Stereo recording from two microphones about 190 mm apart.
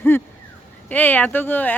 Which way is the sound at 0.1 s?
10° left (ahead or behind).